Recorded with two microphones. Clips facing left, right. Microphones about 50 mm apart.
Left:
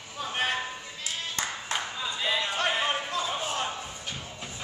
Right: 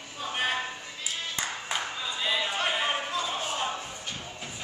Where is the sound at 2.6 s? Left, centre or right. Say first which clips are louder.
Left 1 dB; centre.